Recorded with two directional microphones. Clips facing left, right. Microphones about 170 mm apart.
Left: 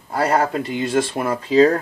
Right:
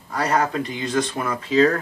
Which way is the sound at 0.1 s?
30° left (ahead or behind).